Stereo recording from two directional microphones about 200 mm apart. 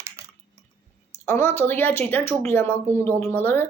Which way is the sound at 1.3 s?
10° left (ahead or behind).